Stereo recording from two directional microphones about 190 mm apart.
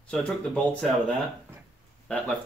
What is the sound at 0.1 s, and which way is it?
Speech, centre (ahead or behind).